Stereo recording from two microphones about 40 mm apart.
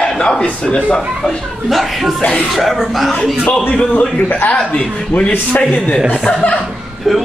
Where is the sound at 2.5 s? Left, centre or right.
Centre.